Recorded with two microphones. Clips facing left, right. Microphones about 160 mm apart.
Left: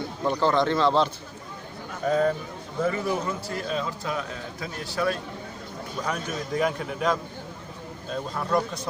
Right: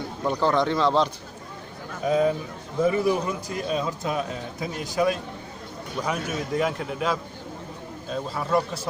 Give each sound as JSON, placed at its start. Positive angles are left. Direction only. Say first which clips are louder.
{"t": 0.4, "sound": "a man's voice", "louder": "even", "side_deg": 0}
{"t": 2.0, "sound": "a man's voice", "louder": "right 1 dB", "side_deg": -10}